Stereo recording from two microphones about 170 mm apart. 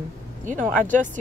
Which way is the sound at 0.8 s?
50° right (ahead or behind).